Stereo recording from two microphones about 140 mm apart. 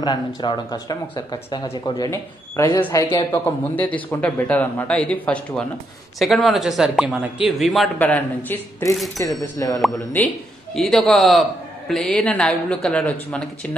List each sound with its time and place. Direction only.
0.0 s a man's voice: 30° left (ahead or behind); by 7.9 s centre (ahead or behind)
8.0 s a man's voice: 10° left (ahead or behind)
10.1 s a man's voice: 5° left (ahead or behind)